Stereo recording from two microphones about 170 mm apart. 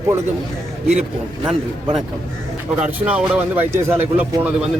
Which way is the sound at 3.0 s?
5° right (ahead or behind).